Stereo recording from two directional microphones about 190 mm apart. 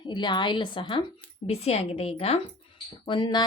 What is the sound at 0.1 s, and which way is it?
A woman's voice, 25° left (ahead or behind).